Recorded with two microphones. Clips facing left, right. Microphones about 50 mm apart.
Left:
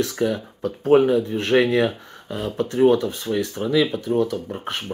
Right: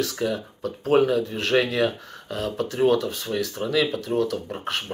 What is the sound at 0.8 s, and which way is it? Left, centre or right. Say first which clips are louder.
Speech: left 4 dB; left.